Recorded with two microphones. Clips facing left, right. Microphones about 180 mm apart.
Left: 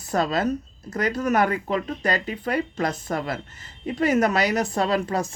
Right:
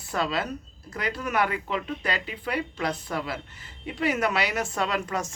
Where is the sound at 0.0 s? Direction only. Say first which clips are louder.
Left 5 dB; 40° left (ahead or behind).